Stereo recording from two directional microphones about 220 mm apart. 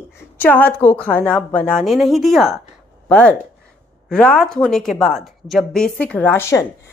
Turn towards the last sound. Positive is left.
turn(degrees=10)  # may be behind; listen again after turning